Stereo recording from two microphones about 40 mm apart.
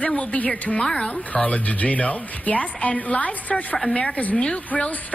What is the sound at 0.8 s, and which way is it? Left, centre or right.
Speech, left.